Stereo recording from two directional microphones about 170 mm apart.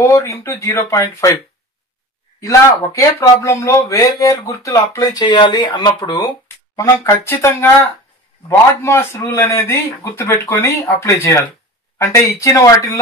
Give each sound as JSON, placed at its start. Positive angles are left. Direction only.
{"t": 0.0, "sound": "a man's voice", "side_deg": 15}
{"t": 2.4, "sound": "a man's voice", "side_deg": 20}